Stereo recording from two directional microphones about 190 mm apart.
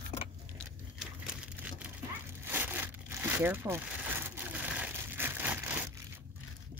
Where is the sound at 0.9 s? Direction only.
5° right (ahead or behind).